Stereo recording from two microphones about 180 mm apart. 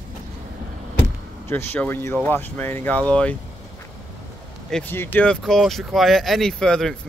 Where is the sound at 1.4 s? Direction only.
10° left (ahead or behind).